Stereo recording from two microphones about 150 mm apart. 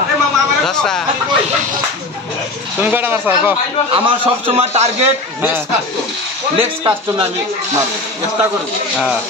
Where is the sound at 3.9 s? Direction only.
35° right (ahead or behind).